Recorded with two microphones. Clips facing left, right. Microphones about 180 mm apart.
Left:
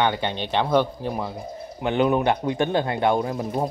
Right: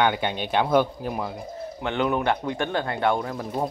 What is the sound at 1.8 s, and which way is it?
Speech, 20° left (ahead or behind).